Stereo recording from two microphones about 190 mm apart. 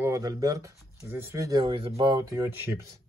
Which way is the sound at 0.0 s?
15° right (ahead or behind).